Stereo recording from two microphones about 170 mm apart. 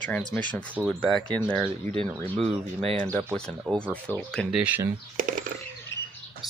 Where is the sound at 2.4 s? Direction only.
35° right (ahead or behind).